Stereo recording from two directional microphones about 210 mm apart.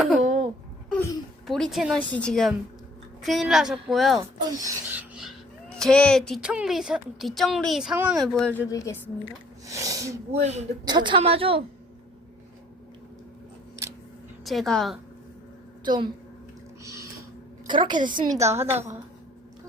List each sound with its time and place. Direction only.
0.2 s a sound: 35° right (ahead or behind)
1.5 s speech: centre (ahead or behind)
4.2 s speech: 15° right (ahead or behind); by 9.0 s 15° left (ahead or behind)
9.6 s speech: 15° right (ahead or behind)
10.3 s speech: 30° right (ahead or behind)
10.8 s a woman's voice: 20° right (ahead or behind)
13.8 s scissors: 15° right (ahead or behind)
14.4 s speech: centre (ahead or behind)
15.8 s a woman's voice: 20° right (ahead or behind)
16.8 s a sound: 15° right (ahead or behind)
17.7 s a woman's voice: 20° right (ahead or behind)